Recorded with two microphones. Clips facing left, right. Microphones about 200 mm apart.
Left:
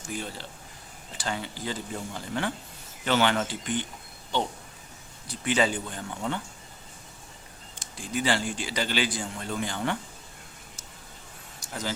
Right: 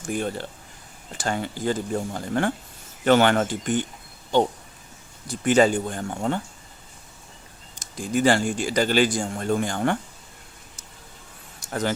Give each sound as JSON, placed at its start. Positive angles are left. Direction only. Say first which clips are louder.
{"t": 0.0, "sound": "speech", "louder": "right 8 dB", "side_deg": -55}
{"t": 5.3, "sound": "speech", "louder": "right 7 dB", "side_deg": -45}
{"t": 7.8, "sound": "speech", "louder": "right 8 dB", "side_deg": -45}
{"t": 11.7, "sound": "speech", "louder": "right 8 dB", "side_deg": -60}